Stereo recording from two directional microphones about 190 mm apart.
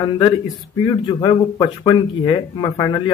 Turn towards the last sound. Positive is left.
turn(degrees=25)  # may be behind; listen again after turning